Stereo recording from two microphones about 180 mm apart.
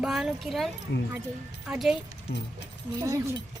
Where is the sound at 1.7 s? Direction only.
5° right (ahead or behind).